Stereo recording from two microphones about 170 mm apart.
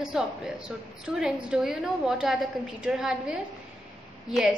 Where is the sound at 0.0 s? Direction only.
5° right (ahead or behind).